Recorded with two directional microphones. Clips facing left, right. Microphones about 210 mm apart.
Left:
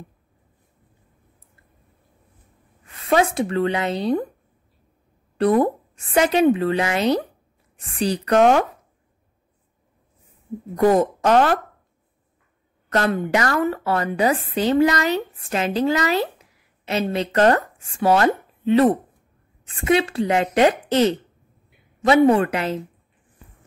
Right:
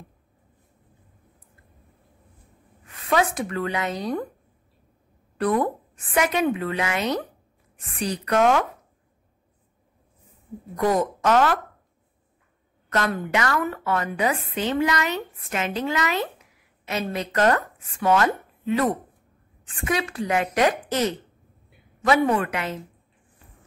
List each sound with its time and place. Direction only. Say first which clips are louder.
3.1 s a woman's voice: left 4 dB; 25° left (ahead or behind)
5.4 s a woman's voice: left 5 dB; 25° left (ahead or behind)
10.8 s a woman's voice: left 5 dB; 30° left (ahead or behind)
12.9 s a woman's voice: left 4 dB; 35° left (ahead or behind)